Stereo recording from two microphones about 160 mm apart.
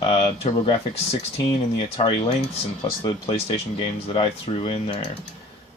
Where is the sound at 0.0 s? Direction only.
35° left (ahead or behind).